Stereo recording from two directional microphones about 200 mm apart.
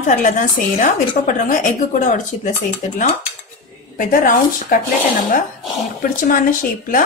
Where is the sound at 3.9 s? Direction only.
45° left (ahead or behind).